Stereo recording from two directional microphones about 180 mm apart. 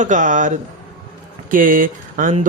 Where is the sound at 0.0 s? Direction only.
45° right (ahead or behind).